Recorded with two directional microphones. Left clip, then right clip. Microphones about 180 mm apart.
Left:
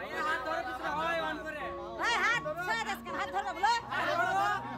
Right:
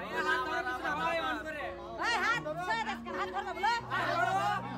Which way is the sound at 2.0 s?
30° left (ahead or behind).